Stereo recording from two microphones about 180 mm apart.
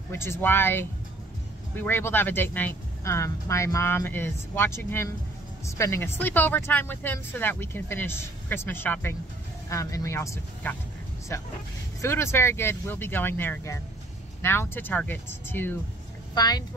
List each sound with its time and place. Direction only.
0.1 s speech: 15° left (ahead or behind)
12.0 s speech: 15° left (ahead or behind)